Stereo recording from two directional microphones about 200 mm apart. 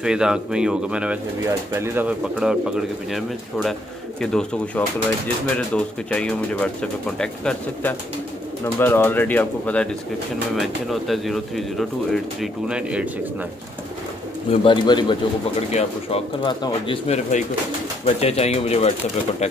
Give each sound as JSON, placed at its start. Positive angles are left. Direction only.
{"t": 0.0, "sound": "speech", "side_deg": -5}
{"t": 14.5, "sound": "speech", "side_deg": 25}